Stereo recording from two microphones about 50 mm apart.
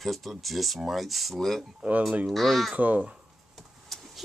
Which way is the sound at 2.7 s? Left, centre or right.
Right.